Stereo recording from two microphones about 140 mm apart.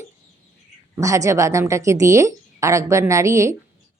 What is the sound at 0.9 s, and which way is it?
A woman's voice, 20° right (ahead or behind).